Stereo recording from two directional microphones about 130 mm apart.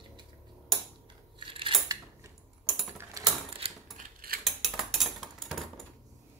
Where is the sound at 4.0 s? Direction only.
85° right.